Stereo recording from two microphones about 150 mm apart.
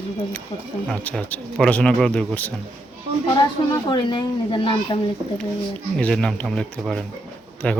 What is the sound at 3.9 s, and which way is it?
Speech, 30° left (ahead or behind).